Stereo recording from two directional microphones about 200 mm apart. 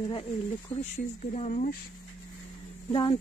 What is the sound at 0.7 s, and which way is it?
Speech, 35° left (ahead or behind).